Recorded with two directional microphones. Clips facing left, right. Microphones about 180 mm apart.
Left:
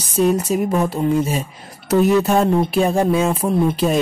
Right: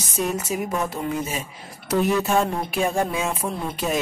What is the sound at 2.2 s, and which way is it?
A woman's voice, 40° left (ahead or behind).